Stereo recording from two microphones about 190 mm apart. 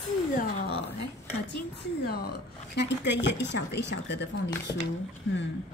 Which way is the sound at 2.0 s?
55° left (ahead or behind).